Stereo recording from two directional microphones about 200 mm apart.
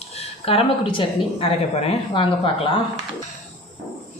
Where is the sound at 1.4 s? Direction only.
30° left (ahead or behind).